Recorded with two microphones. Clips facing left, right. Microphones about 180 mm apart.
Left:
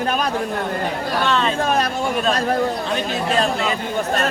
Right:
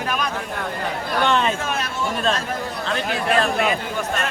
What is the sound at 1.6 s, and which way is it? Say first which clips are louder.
Speech: left 7 dB; 40° left (ahead or behind).